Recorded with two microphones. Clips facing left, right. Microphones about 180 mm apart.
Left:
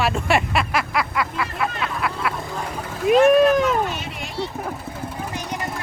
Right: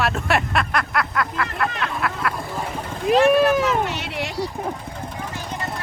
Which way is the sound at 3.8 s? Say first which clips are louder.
Right 2 dB; 70° right (ahead or behind).